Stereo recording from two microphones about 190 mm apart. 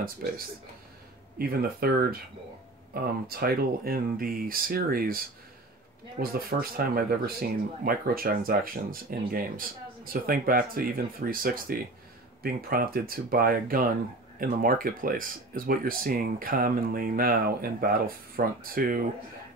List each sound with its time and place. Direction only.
1.4 s speech: 55° right (ahead or behind)